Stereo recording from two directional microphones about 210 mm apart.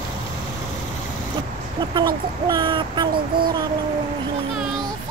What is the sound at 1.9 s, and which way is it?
Speech, 20° right (ahead or behind).